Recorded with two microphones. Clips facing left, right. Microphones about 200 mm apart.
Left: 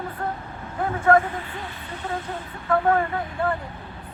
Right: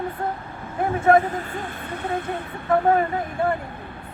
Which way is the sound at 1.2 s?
40° right (ahead or behind).